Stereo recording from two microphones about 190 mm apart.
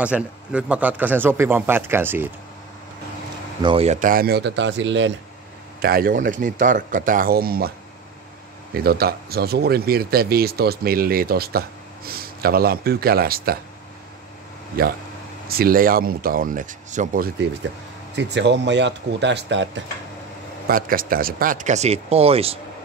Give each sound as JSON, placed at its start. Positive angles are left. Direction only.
{"t": 0.0, "sound": "speech", "side_deg": -5}
{"t": 3.6, "sound": "speech", "side_deg": -30}
{"t": 5.8, "sound": "speech", "side_deg": -50}
{"t": 8.7, "sound": "speech", "side_deg": -55}
{"t": 14.8, "sound": "speech", "side_deg": -50}
{"t": 18.1, "sound": "speech", "side_deg": -65}
{"t": 20.6, "sound": "speech", "side_deg": -50}